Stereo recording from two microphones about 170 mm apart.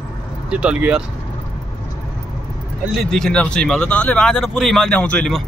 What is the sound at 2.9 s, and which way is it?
Speech, centre (ahead or behind).